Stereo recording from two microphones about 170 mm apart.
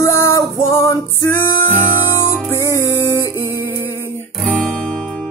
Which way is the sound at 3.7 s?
15° left (ahead or behind).